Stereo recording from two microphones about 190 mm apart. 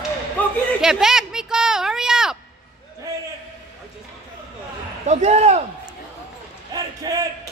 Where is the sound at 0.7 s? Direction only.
5° right (ahead or behind).